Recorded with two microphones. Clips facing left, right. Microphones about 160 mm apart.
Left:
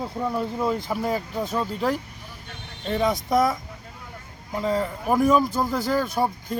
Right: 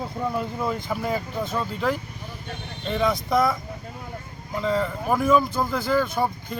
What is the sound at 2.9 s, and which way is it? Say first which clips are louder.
Speech: left 1 dB; 40° left (ahead or behind).